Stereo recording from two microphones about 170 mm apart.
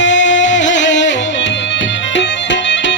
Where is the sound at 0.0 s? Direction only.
90° left.